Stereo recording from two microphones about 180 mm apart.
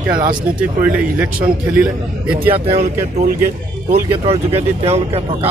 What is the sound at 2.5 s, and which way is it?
Speech, 30° right (ahead or behind).